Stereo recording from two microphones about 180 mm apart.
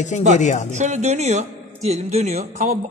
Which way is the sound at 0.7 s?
40° right (ahead or behind).